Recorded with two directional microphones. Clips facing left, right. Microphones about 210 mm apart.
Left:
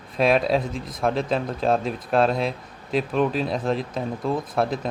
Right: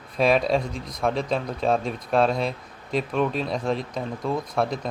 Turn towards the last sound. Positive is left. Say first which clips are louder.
# left 1 dB
turn(degrees=0)  # may be behind; listen again after turning